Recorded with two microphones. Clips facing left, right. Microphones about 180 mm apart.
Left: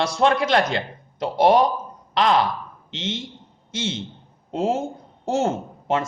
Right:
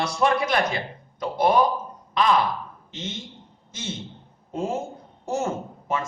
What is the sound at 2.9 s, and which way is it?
A man's voice, 85° left.